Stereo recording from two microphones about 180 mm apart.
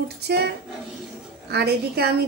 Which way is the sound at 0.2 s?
65° right (ahead or behind).